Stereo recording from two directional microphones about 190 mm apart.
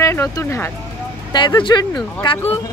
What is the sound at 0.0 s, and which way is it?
A woman's voice, 15° left (ahead or behind).